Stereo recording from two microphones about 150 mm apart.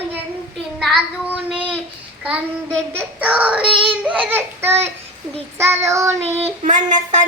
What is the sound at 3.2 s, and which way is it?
Child singing, 10° right (ahead or behind).